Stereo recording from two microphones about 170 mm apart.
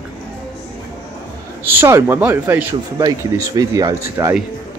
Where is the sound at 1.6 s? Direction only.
15° right (ahead or behind).